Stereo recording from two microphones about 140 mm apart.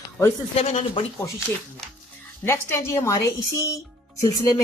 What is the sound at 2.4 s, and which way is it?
Speech, 15° left (ahead or behind).